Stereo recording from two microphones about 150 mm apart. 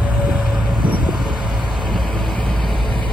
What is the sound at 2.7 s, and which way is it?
Vehicle, 35° left (ahead or behind).